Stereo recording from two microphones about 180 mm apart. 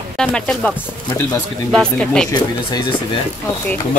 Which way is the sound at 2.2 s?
20° left (ahead or behind).